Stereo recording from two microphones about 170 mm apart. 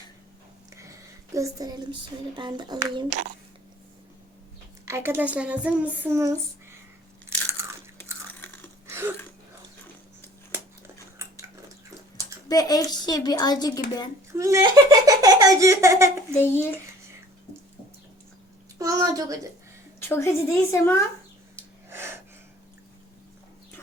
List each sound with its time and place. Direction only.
0.7 s speech: 20° right (ahead or behind)
4.9 s speech: 15° right (ahead or behind)
8.3 s a sound: 10° left (ahead or behind)
8.9 s a sound: 15° right (ahead or behind)
12.5 s a woman's voice: 20° left (ahead or behind)
14.3 s speech: 20° right (ahead or behind)
18.8 s a woman's voice: 20° right (ahead or behind)
20.0 s a woman's voice: 15° left (ahead or behind)
21.5 s snort: 15° right (ahead or behind)